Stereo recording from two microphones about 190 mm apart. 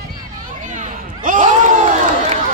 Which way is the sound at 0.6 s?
40° right (ahead or behind).